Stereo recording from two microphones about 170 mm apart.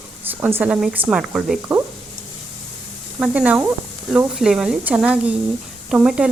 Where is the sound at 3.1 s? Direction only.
10° right (ahead or behind).